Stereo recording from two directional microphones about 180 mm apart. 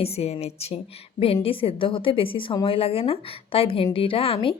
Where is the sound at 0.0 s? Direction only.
35° left (ahead or behind).